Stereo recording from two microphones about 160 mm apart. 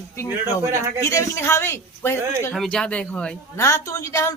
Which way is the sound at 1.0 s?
20° left (ahead or behind).